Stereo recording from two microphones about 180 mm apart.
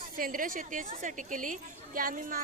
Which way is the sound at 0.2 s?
50° right (ahead or behind).